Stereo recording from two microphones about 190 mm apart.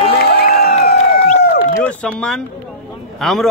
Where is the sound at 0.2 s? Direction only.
55° left (ahead or behind).